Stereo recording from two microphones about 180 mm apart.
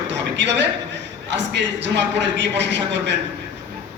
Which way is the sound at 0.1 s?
75° right (ahead or behind).